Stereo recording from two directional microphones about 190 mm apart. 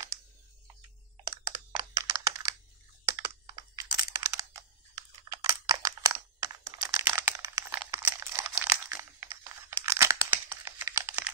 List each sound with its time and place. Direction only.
1.3 s computer keyboard: 20° right (ahead or behind)
4.9 s a sound: 20° right (ahead or behind)
7.9 s crumpling: 15° right (ahead or behind)